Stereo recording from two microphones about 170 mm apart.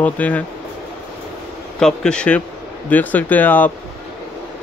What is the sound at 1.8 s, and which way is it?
A man's voice, 5° left (ahead or behind).